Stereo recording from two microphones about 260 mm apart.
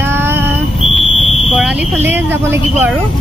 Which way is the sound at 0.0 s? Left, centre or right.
Centre.